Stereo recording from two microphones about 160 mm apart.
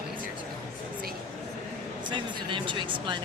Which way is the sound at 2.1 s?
30° right (ahead or behind).